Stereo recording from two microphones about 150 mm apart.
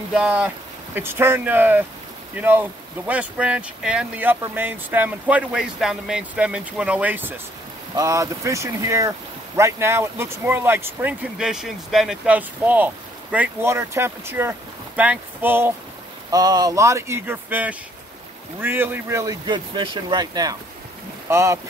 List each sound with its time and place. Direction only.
0.1 s speech: 5° right (ahead or behind)
16.3 s speech: 25° right (ahead or behind)